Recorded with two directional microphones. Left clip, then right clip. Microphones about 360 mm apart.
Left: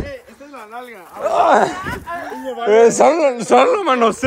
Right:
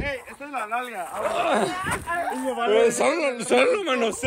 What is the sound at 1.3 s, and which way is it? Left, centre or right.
Speech, centre.